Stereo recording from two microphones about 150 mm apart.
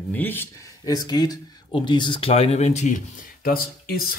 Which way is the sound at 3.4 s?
80° left.